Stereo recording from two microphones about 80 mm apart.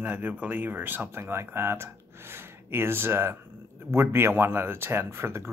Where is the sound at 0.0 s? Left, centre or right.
Right.